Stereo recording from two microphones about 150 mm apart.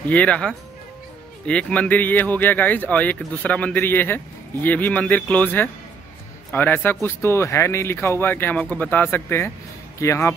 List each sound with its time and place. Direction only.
0.1 s speech: 10° left (ahead or behind)